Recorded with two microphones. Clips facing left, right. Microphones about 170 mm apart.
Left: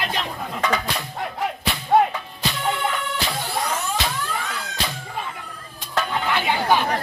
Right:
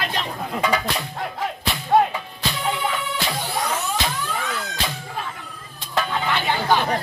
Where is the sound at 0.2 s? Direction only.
10° right (ahead or behind).